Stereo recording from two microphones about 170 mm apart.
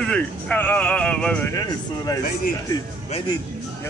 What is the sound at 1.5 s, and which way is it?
Speech, 20° left (ahead or behind).